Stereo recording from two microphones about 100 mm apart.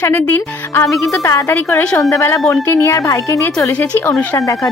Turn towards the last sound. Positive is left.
turn(degrees=35)  # may be behind; listen again after turning